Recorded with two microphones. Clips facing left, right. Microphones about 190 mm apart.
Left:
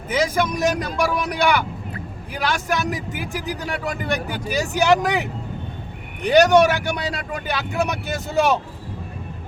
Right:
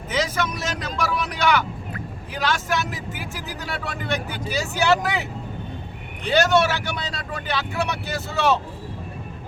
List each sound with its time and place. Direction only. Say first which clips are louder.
0.1 s speech: left 4 dB; 10° left (ahead or behind)